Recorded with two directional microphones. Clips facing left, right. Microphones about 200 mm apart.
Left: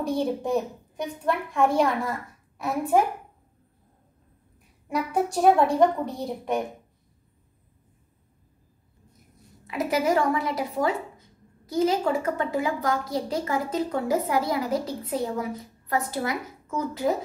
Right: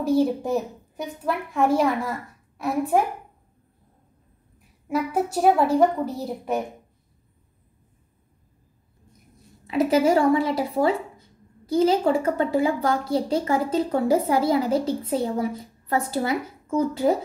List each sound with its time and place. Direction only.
0.0 s a child's voice: 5° right (ahead or behind)
4.8 s a child's voice: centre (ahead or behind)
9.7 s a woman's voice: 30° right (ahead or behind)